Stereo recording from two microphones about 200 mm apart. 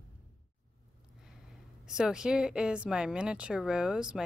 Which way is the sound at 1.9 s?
5° right (ahead or behind).